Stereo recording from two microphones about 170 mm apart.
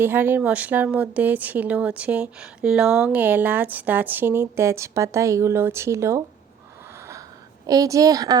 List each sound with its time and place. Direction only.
0.0 s a woman's voice: 10° right (ahead or behind)
7.7 s a woman's voice: 20° right (ahead or behind)